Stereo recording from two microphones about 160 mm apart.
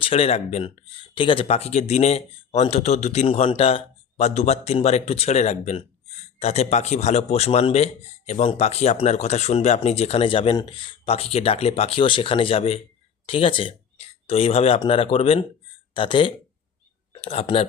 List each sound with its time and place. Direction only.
0.0 s speech: 40° left (ahead or behind)
0.9 s speech: 30° left (ahead or behind)